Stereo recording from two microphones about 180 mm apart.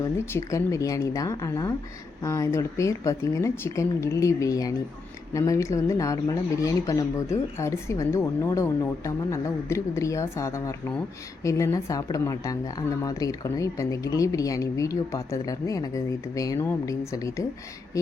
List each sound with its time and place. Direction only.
0.3 s a woman's voice: 15° left (ahead or behind)